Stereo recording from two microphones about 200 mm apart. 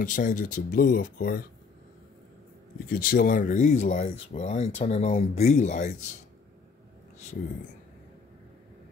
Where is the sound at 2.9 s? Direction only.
45° left (ahead or behind).